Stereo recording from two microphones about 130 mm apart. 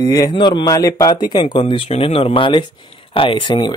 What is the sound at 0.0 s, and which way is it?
Speech, 30° left (ahead or behind).